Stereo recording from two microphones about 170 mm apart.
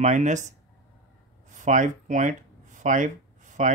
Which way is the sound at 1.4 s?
45° right (ahead or behind).